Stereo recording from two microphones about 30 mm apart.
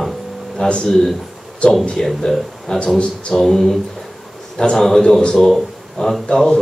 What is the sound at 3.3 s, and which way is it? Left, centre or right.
A man's voice, centre.